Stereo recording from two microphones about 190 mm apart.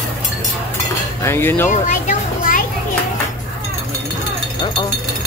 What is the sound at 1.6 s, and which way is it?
Children playing, 40° left (ahead or behind).